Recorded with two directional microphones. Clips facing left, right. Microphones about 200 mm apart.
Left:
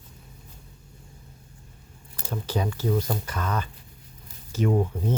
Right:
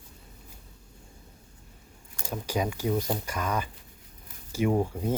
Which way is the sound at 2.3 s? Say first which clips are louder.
Left 1 dB; 10° right (ahead or behind).